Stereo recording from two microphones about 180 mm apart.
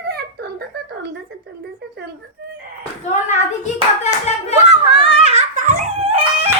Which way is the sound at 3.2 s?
40° left (ahead or behind).